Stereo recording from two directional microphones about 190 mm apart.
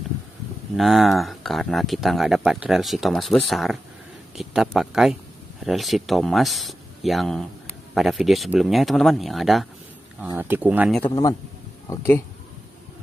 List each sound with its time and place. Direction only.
0.7 s speech: centre (ahead or behind)
10.2 s speech: 10° right (ahead or behind)
11.1 s speech: 20° left (ahead or behind)